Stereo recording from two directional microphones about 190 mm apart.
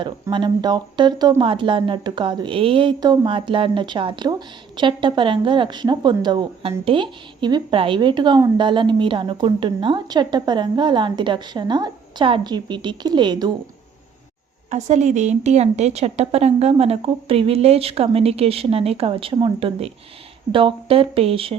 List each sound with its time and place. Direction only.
0.0 s speech: 25° right (ahead or behind)
14.7 s a woman's voice: 40° right (ahead or behind)